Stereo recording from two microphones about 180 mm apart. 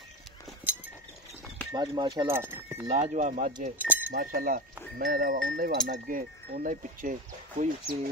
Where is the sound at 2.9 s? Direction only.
40° right (ahead or behind).